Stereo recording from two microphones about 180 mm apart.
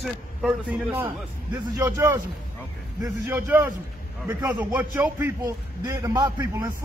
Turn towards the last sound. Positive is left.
turn(degrees=-20)  # may be behind; listen again after turning